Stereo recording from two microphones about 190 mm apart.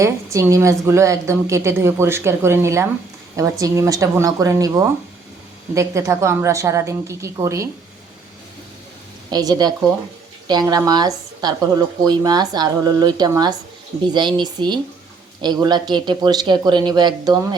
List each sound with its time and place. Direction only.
0.0 s a woman's voice: 15° right (ahead or behind)
9.3 s speech: 20° right (ahead or behind)